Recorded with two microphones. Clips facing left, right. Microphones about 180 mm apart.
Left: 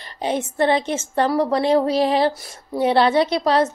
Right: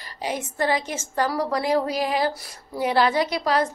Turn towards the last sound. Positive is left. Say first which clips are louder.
# left 4 dB
turn(degrees=25)  # may be behind; listen again after turning